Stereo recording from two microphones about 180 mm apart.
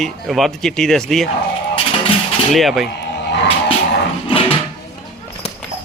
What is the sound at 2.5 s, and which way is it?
Speech, centre (ahead or behind).